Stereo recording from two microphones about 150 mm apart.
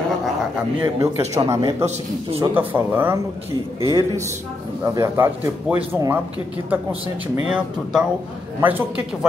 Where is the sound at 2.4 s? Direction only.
10° right (ahead or behind).